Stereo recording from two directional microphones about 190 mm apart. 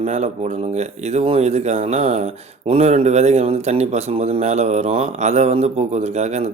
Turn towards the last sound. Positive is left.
turn(degrees=-35)  # may be behind; listen again after turning